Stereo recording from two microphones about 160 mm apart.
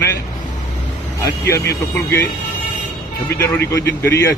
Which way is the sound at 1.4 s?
20° left (ahead or behind).